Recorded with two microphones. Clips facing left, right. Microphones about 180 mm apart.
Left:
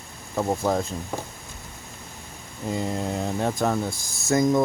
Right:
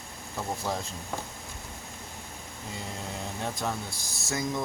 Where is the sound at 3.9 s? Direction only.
50° left (ahead or behind).